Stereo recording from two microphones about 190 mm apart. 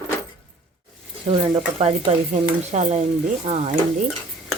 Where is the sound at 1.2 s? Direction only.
30° right (ahead or behind).